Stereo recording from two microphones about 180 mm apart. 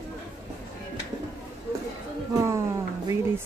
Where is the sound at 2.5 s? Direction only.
15° right (ahead or behind).